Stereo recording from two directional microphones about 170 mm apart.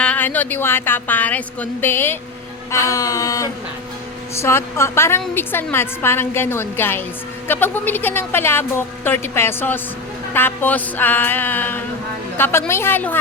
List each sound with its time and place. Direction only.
0.0 s speech: 10° left (ahead or behind)
2.7 s a sound: 20° left (ahead or behind)
4.4 s speech: 15° left (ahead or behind)